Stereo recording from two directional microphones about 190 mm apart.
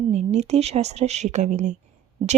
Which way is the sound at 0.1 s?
35° right (ahead or behind).